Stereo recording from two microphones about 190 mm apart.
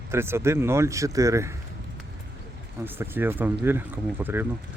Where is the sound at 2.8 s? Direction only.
10° right (ahead or behind).